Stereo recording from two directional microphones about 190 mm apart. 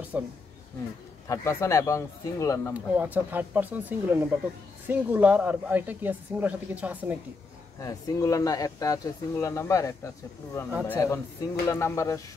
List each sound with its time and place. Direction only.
0.1 s speech: 10° right (ahead or behind)
1.2 s speech: 15° left (ahead or behind)
2.7 s speech: 10° right (ahead or behind)
7.8 s speech: 15° left (ahead or behind)